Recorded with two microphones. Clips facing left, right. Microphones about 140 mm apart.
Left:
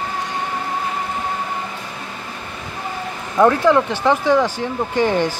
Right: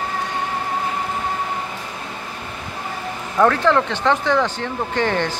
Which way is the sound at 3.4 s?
10° left (ahead or behind).